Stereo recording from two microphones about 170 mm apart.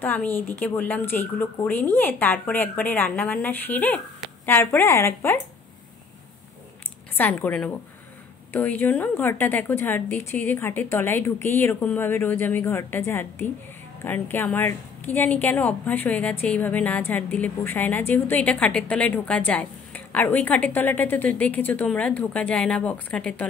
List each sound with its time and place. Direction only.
0.0 s a woman's voice: 10° left (ahead or behind)
7.2 s a woman's voice: 10° left (ahead or behind)